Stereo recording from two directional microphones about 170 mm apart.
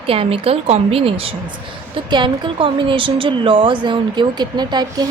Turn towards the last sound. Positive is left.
turn(degrees=-25)  # may be behind; listen again after turning